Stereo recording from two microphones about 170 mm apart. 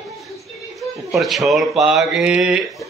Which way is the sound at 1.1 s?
Centre (ahead or behind).